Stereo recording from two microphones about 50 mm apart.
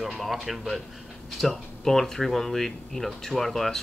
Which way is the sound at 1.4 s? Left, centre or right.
Centre.